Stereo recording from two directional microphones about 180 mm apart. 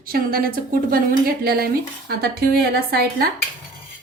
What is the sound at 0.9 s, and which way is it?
A woman's voice, 55° right (ahead or behind).